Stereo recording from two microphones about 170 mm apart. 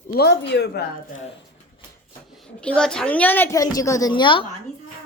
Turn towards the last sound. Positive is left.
turn(degrees=30)  # may be behind; listen again after turning